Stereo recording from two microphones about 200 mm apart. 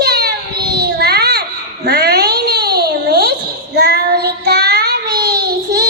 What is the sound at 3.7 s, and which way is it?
Child singing, 50° right (ahead or behind).